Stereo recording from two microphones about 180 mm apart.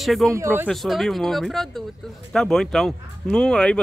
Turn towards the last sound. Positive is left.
turn(degrees=5)  # may be behind; listen again after turning